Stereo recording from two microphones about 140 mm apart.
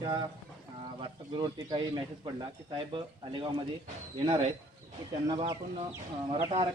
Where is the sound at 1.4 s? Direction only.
30° right (ahead or behind).